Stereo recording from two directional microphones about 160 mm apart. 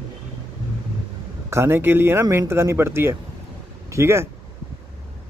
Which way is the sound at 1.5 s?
15° right (ahead or behind).